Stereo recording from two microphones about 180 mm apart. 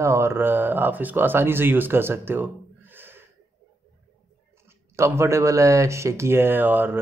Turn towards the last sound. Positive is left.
turn(degrees=-10)  # may be behind; listen again after turning